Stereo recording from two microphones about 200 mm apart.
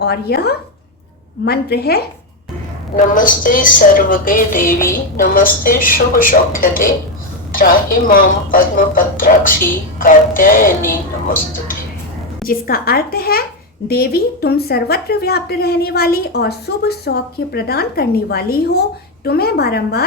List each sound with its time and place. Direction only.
0.0 s a woman's voice: 55° left (ahead or behind)
12.4 s a woman's voice: 45° left (ahead or behind)